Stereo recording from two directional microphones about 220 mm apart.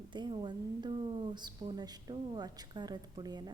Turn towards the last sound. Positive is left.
turn(degrees=-20)  # may be behind; listen again after turning